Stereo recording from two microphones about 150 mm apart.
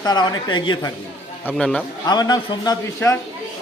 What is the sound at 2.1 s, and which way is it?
Speech, 25° left (ahead or behind).